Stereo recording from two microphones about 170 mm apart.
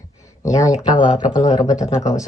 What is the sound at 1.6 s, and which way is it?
Speech, 20° left (ahead or behind).